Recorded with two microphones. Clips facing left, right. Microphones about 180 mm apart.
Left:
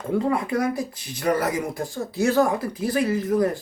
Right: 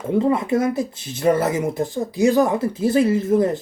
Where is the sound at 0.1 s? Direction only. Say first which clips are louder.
Right 4 dB; 25° right (ahead or behind).